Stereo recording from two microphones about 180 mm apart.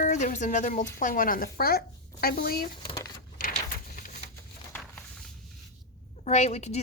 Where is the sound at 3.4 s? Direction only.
50° left (ahead or behind).